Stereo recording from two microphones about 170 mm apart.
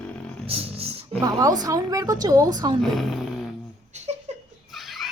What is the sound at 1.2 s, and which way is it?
Speech, 20° right (ahead or behind).